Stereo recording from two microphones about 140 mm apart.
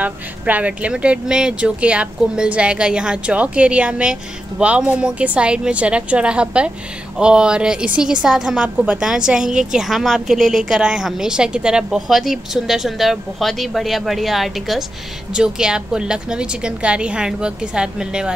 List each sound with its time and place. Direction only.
0.0 s a woman's voice: 10° right (ahead or behind)